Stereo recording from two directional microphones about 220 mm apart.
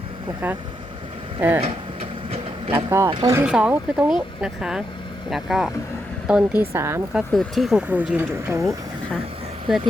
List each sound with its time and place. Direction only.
1.4 s speech: 10° right (ahead or behind)
1.6 s a sound: 30° right (ahead or behind)
2.7 s speech: 10° right (ahead or behind)
3.3 s speech: 5° right (ahead or behind)